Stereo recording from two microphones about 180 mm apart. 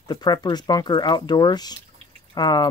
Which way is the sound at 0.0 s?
20° left (ahead or behind).